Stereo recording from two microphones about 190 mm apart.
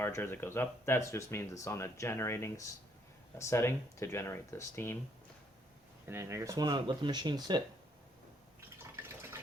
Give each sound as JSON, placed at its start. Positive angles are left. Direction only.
{"t": 0.0, "sound": "speech", "side_deg": 10}
{"t": 6.1, "sound": "speech", "side_deg": -15}